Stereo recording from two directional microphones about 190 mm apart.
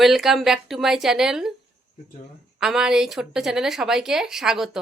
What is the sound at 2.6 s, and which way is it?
A woman's voice, 5° right (ahead or behind).